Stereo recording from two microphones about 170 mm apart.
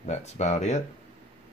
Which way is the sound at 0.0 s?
45° left (ahead or behind).